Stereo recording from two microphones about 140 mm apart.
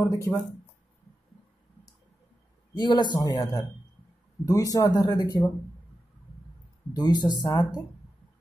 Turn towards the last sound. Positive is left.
turn(degrees=30)  # may be behind; listen again after turning